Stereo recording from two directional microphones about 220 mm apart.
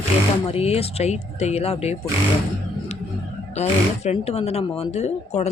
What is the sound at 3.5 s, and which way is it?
Speech, 30° left (ahead or behind).